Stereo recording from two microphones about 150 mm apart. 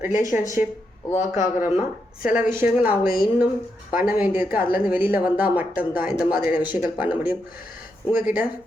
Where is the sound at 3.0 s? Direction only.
80° left.